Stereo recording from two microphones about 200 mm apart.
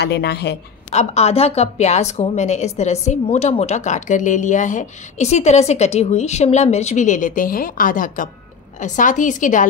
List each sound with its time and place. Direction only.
0.0 s a woman's voice: 55° left (ahead or behind)
0.8 s a woman's voice: 30° left (ahead or behind)